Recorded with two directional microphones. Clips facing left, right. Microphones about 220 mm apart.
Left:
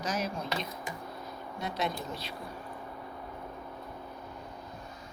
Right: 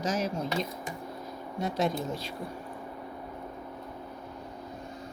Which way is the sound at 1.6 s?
45° right (ahead or behind).